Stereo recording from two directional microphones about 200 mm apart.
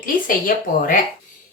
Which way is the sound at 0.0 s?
45° left (ahead or behind).